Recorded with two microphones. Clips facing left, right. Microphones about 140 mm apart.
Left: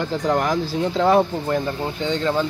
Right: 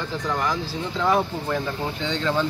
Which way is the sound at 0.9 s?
35° left (ahead or behind).